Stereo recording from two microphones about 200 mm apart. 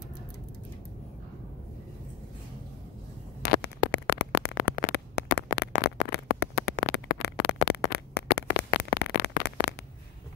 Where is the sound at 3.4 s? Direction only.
55° left (ahead or behind).